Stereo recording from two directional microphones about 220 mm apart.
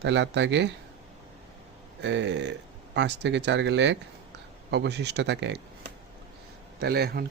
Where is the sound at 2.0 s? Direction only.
55° right (ahead or behind).